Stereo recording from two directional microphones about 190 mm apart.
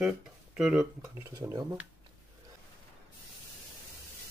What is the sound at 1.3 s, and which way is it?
Speech, 20° right (ahead or behind).